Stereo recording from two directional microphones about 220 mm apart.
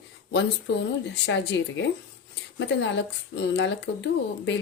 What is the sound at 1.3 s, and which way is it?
Speech, 55° left (ahead or behind).